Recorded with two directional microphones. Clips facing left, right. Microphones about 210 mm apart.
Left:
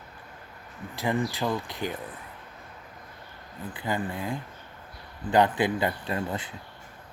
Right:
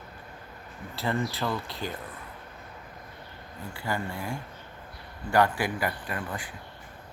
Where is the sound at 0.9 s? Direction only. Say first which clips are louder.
Left 2 dB; 15° left (ahead or behind).